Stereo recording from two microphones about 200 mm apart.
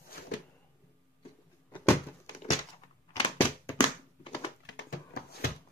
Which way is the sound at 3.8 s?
30° left (ahead or behind).